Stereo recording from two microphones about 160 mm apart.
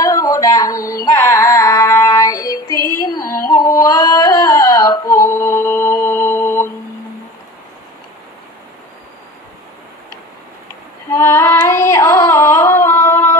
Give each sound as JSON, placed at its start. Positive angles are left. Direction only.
{"t": 0.0, "sound": "music", "side_deg": 20}
{"t": 3.4, "sound": "singing", "side_deg": 25}
{"t": 11.1, "sound": "singing", "side_deg": 15}